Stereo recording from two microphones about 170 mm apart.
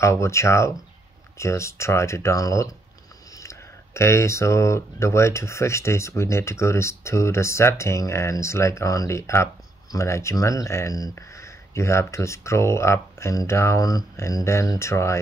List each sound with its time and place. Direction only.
0.0 s speech: 15° left (ahead or behind)